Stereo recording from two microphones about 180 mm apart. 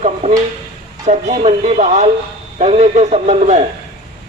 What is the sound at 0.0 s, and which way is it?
Speech, 40° right (ahead or behind).